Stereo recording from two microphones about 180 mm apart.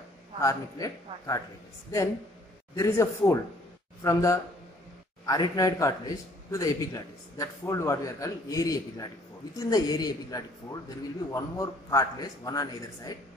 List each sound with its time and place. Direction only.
0.4 s a man's voice: 20° left (ahead or behind)
2.7 s a man's voice: 15° left (ahead or behind)